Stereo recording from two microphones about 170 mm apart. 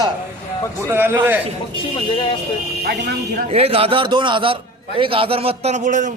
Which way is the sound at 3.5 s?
35° right (ahead or behind).